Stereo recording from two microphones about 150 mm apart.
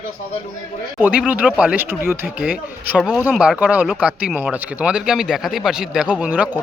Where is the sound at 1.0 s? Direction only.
10° right (ahead or behind).